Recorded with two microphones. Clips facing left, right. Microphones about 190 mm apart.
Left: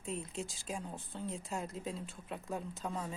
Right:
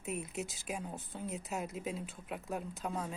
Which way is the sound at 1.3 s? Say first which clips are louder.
Right 1 dB; 5° right (ahead or behind).